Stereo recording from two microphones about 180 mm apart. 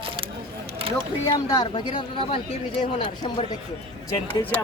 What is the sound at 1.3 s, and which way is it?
Speech, 20° left (ahead or behind).